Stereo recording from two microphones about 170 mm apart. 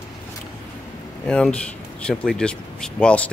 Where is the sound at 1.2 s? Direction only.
5° left (ahead or behind).